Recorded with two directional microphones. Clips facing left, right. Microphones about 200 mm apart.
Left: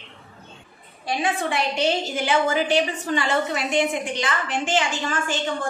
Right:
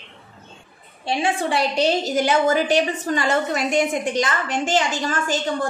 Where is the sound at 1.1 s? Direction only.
30° right (ahead or behind).